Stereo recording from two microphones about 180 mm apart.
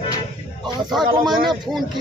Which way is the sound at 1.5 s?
Centre (ahead or behind).